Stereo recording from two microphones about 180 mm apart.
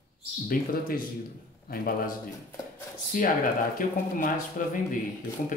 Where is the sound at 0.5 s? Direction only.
50° left (ahead or behind).